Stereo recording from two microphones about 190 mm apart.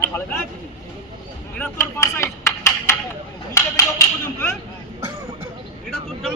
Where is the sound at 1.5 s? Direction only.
10° left (ahead or behind).